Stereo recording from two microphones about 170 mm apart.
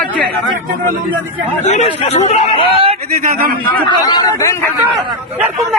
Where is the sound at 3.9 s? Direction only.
25° left (ahead or behind).